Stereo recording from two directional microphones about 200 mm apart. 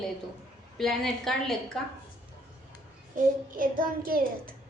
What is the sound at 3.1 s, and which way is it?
Child singing, 45° right (ahead or behind).